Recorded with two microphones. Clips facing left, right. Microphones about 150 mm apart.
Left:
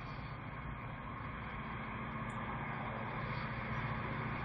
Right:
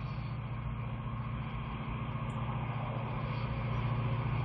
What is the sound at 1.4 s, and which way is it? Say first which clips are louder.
Vehicle: right 4 dB; 10° right (ahead or behind).